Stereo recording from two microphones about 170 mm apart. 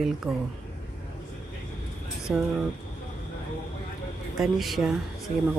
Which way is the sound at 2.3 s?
Centre (ahead or behind).